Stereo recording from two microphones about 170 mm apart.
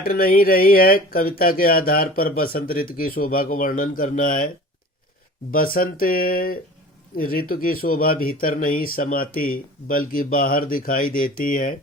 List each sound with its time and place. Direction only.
0.0 s speech: 60° left (ahead or behind)